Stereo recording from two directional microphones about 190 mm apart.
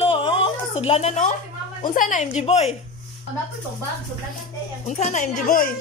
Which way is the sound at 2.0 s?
40° left (ahead or behind).